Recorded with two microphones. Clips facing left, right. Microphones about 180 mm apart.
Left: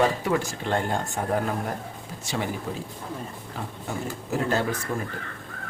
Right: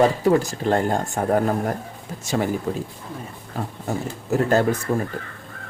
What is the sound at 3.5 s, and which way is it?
Speech, 45° right (ahead or behind).